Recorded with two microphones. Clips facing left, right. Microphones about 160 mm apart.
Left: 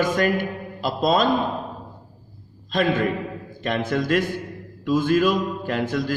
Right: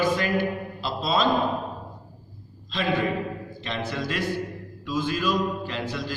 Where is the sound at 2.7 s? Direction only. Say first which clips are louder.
Left 4 dB; 50° left (ahead or behind).